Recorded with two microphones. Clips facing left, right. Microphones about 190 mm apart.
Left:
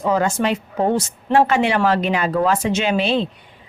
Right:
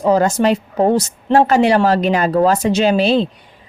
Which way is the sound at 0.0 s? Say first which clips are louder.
Right 5 dB; 40° right (ahead or behind).